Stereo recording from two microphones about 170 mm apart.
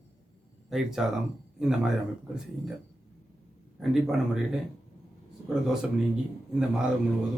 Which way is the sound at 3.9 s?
Centre (ahead or behind).